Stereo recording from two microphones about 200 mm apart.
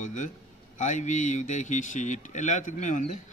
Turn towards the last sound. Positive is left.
turn(degrees=35)  # may be behind; listen again after turning